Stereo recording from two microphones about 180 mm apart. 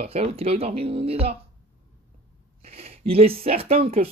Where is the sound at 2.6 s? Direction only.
35° right (ahead or behind).